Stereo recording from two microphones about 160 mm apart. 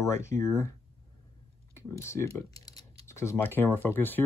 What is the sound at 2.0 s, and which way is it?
Speech, 15° left (ahead or behind).